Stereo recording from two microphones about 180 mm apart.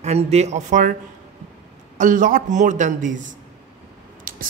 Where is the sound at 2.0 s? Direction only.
45° right (ahead or behind).